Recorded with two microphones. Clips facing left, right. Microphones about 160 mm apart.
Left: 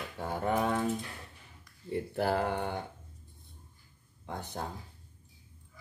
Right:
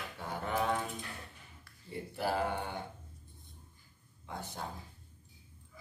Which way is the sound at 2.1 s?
55° left (ahead or behind).